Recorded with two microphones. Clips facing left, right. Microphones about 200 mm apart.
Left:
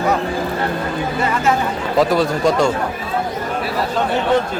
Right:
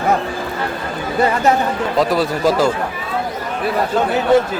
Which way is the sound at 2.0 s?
Centre (ahead or behind).